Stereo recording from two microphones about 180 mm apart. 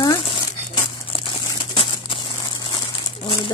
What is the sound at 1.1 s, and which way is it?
Crumpling, 30° left (ahead or behind).